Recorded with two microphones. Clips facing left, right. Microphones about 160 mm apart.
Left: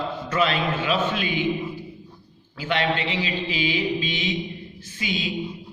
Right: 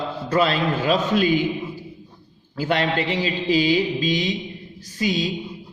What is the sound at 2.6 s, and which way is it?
Mantra, 40° right (ahead or behind).